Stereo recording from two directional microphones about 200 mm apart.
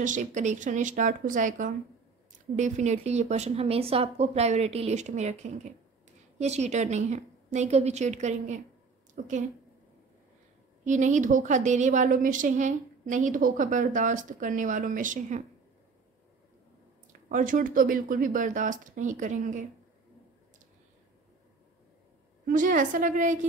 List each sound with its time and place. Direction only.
0.0 s a woman's voice: 40° right (ahead or behind)
10.8 s a woman's voice: 35° right (ahead or behind)
17.3 s a woman's voice: 40° right (ahead or behind)
22.5 s a woman's voice: 40° right (ahead or behind)